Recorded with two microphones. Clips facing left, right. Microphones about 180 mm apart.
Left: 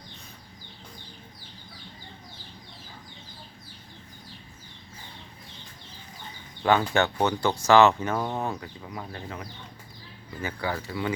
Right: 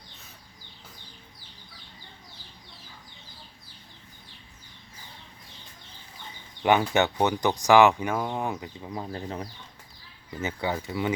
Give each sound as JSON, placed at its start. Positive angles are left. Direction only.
{"t": 6.6, "sound": "speech", "side_deg": -15}
{"t": 8.9, "sound": "speech", "side_deg": -30}